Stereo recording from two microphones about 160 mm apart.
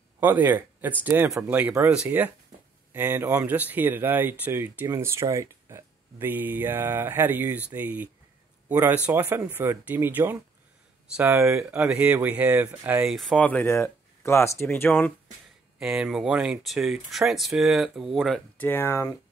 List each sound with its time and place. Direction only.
0.2 s a man's voice: 10° right (ahead or behind); by 15.1 s 10° left (ahead or behind)
15.8 s speech: 5° right (ahead or behind)
18.6 s speech: 15° left (ahead or behind)